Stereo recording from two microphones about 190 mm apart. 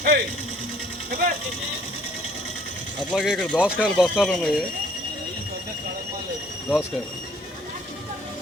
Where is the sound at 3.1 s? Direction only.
5° left (ahead or behind).